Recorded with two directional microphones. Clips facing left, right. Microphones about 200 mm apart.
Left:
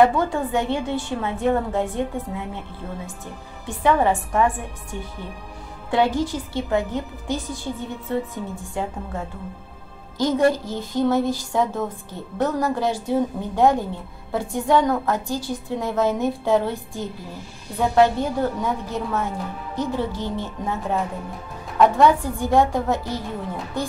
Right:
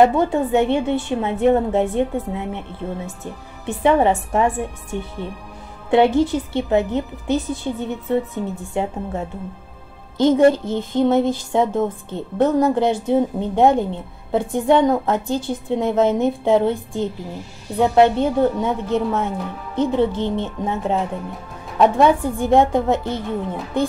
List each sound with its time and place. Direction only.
0.0 s a woman's voice: 20° right (ahead or behind)